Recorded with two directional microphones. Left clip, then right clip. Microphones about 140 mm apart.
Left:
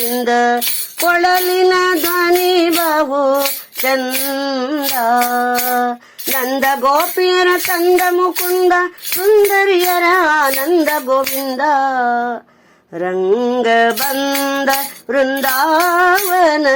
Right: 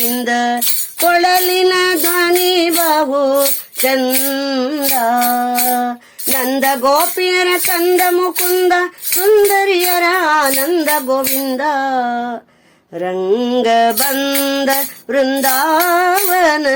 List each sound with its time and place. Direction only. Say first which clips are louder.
0.0 s music: left 1 dB; 30° right (ahead or behind)
0.3 s music: left 3 dB; 15° right (ahead or behind)
2.9 s music: right 1 dB; 20° right (ahead or behind)
4.9 s music: even; 10° right (ahead or behind); by 14.1 s 30° right (ahead or behind)
14.1 s music: even; 15° right (ahead or behind)
14.3 s music: even; 30° right (ahead or behind)
15.5 s music: left 1 dB; 10° right (ahead or behind)
15.8 s music: left 1 dB; 25° right (ahead or behind)